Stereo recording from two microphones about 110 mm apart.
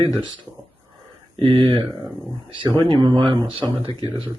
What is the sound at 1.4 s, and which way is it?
Speech, 50° right (ahead or behind).